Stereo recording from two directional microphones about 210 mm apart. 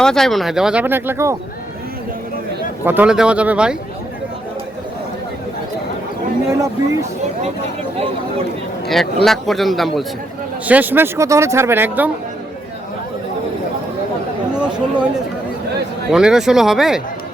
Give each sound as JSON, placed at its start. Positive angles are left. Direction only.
{"t": 0.0, "sound": "speech", "side_deg": 0}
{"t": 2.8, "sound": "speech", "side_deg": -10}
{"t": 6.5, "sound": "speech", "side_deg": -15}
{"t": 9.2, "sound": "speech", "side_deg": 0}
{"t": 14.5, "sound": "chatter", "side_deg": -5}
{"t": 16.1, "sound": "speech", "side_deg": -5}